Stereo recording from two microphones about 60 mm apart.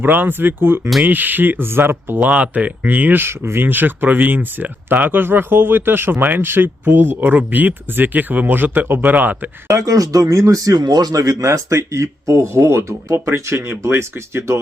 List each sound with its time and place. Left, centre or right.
0.0 s speech: right
2.2 s speech: right
3.2 s speech: right
9.6 s speech: right